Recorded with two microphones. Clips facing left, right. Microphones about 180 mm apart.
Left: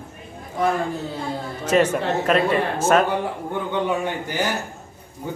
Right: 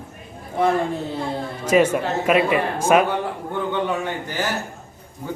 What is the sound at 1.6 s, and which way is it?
Speech, 10° right (ahead or behind).